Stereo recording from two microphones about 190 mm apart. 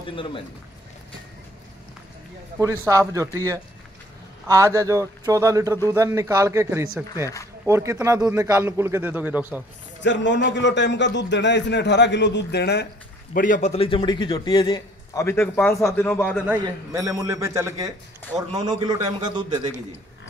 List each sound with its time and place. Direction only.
0.0 s a man's voice: 25° left (ahead or behind)
2.6 s speech: 15° right (ahead or behind)
10.0 s a man's voice: 70° left (ahead or behind)
13.3 s a man's voice: 45° left (ahead or behind); by 16.3 s 10° left (ahead or behind)
16.3 s a man's voice: 10° right (ahead or behind)